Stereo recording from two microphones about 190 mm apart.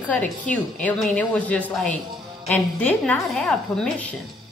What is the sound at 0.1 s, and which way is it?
A woman's voice, 10° left (ahead or behind).